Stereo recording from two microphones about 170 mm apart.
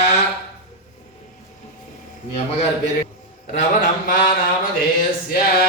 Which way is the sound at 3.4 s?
50° left (ahead or behind).